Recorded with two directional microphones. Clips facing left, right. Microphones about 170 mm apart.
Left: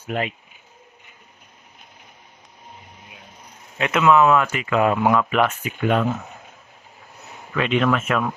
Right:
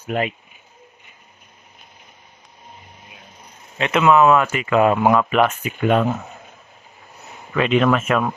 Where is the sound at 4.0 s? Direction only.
25° right (ahead or behind).